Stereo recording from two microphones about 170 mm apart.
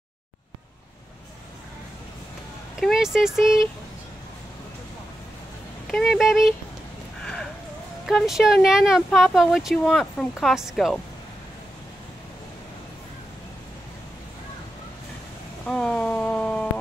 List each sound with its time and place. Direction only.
2.8 s speech: centre (ahead or behind)
5.9 s speech: centre (ahead or behind)
8.1 s speech: centre (ahead or behind)
15.6 s a sound: 5° left (ahead or behind)